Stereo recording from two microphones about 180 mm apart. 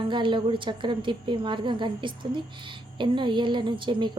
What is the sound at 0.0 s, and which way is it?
A woman's voice, 25° right (ahead or behind).